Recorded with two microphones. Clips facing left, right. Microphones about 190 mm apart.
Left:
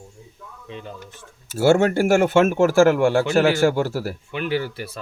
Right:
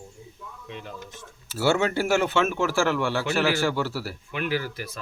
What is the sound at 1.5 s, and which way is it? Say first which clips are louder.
Speech: left 7 dB; 45° left (ahead or behind).